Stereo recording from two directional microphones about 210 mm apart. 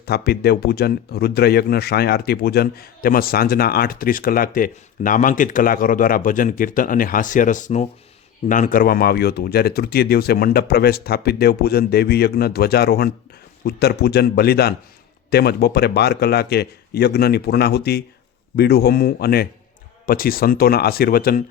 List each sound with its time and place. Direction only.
0.0 s speech: 50° left (ahead or behind)